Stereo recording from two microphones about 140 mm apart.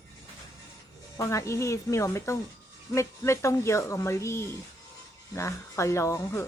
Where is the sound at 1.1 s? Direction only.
20° left (ahead or behind).